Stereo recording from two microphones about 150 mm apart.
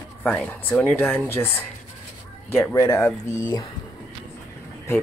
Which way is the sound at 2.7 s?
20° left (ahead or behind).